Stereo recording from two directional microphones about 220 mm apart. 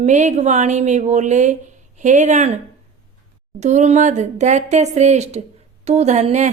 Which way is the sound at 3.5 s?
30° right (ahead or behind).